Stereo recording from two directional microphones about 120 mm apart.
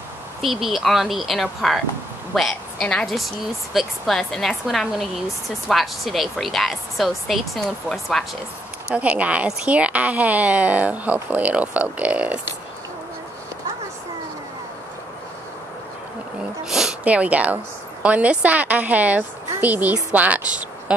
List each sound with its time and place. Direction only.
0.4 s speech: centre (ahead or behind)
8.9 s a woman's voice: 10° right (ahead or behind)
16.6 s a woman's voice: 5° right (ahead or behind)